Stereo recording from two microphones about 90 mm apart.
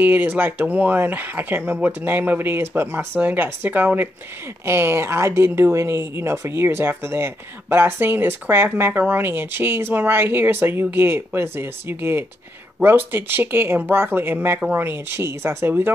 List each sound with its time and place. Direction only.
0.0 s speech: 20° right (ahead or behind)